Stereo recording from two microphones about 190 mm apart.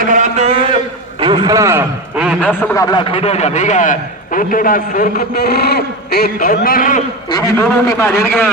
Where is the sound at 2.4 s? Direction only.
15° left (ahead or behind); by 7.0 s 45° left (ahead or behind).